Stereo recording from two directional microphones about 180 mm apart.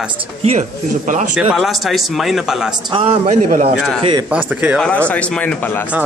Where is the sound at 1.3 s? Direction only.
Centre (ahead or behind).